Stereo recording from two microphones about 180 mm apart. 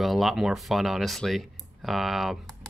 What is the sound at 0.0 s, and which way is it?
Speech, centre (ahead or behind).